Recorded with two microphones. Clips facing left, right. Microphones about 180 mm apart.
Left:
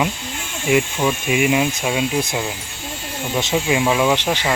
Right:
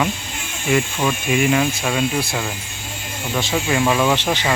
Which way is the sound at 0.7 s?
10° left (ahead or behind).